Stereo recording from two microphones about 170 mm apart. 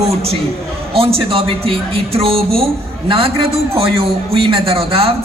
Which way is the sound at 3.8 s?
35° right (ahead or behind).